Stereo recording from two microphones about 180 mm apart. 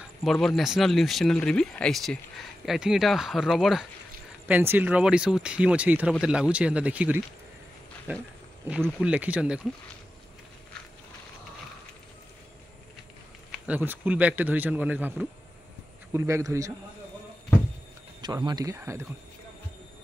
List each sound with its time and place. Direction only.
0.0 s a man's voice: centre (ahead or behind)
13.5 s a man's voice: 10° right (ahead or behind)
18.2 s speech: 25° right (ahead or behind)